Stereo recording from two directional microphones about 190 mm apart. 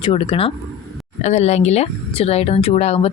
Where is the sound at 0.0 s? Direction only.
30° left (ahead or behind).